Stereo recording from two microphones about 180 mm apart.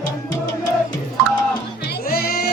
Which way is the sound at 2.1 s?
60° left (ahead or behind).